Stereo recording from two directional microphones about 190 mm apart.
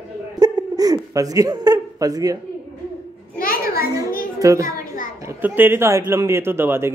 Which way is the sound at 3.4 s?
50° left (ahead or behind).